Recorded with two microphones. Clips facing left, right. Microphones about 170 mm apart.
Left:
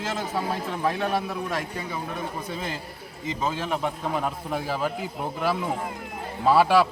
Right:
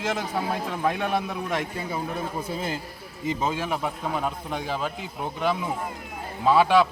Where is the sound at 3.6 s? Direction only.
5° right (ahead or behind).